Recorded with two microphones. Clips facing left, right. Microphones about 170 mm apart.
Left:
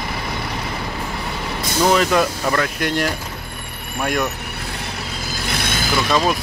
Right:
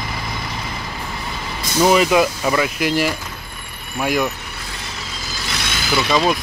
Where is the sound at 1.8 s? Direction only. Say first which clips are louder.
Right 2 dB; 5° right (ahead or behind).